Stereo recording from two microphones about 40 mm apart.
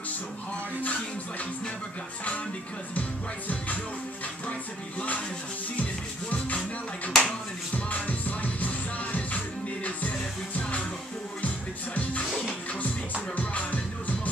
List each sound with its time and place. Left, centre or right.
2.9 s music: left
7.1 s a sound: centre
7.7 s music: left
11.4 s music: left
13.4 s music: left